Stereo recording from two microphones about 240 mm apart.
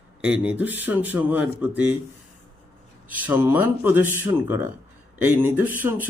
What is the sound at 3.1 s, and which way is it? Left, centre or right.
Speech, centre.